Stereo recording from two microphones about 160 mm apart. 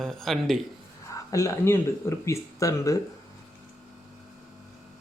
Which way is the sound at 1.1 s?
20° left (ahead or behind).